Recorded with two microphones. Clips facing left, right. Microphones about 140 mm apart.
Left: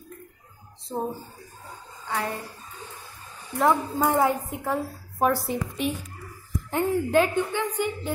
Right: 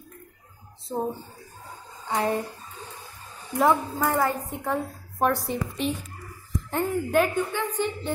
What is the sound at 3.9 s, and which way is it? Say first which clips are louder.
Speech: left 2 dB; 20° left (ahead or behind).